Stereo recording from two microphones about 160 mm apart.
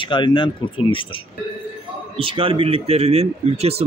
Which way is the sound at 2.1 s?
35° right (ahead or behind).